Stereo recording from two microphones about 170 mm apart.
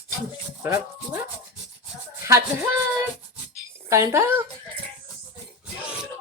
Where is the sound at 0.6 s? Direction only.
15° right (ahead or behind).